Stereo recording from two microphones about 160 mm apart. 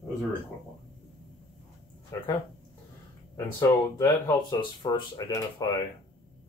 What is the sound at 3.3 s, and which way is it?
Speech, 20° left (ahead or behind).